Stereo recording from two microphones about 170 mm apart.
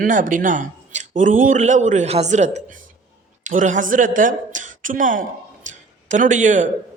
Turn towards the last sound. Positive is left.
turn(degrees=-45)  # may be behind; listen again after turning